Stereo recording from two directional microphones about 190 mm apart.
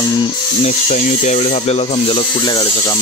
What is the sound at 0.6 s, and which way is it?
Speech, 35° left (ahead or behind).